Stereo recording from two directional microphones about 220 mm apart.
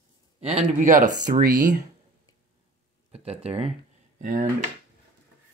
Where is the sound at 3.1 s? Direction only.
30° right (ahead or behind).